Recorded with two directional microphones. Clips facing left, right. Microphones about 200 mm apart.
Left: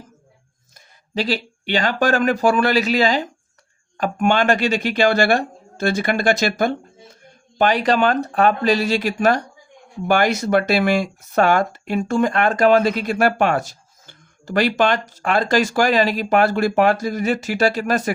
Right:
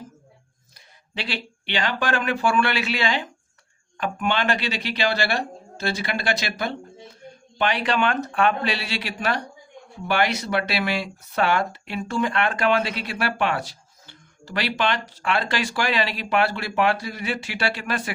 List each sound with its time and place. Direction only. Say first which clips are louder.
0.7 s speech: left 11 dB; 40° left (ahead or behind)